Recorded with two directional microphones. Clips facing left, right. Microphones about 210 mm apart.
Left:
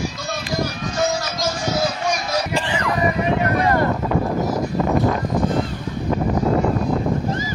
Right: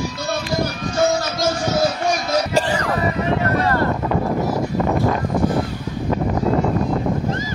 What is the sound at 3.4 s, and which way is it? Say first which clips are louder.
Boat: left 1 dB; 15° left (ahead or behind).